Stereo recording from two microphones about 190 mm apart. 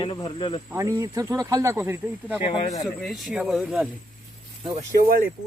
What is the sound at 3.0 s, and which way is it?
Speech, centre (ahead or behind).